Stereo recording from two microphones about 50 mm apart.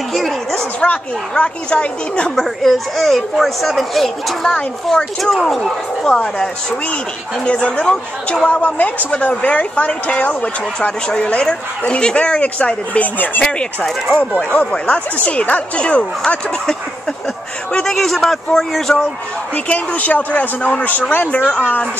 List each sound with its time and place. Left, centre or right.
0.1 s speech: centre
0.7 s speech: left
2.3 s speech: centre
5.7 s speech: centre
8.5 s speech: left
13.8 s speech: centre
14.3 s speech: left
17.9 s speech: centre
19.5 s a man's voice: left